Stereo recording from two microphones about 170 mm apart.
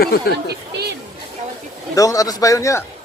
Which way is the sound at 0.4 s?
75° right (ahead or behind).